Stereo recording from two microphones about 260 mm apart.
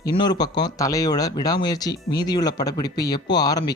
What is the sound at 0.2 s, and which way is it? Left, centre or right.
Speech, centre.